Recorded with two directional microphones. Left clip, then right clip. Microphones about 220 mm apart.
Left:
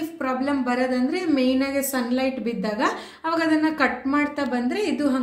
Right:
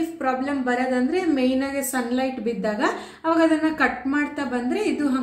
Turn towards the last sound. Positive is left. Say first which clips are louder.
# even
turn(degrees=45)  # may be behind; listen again after turning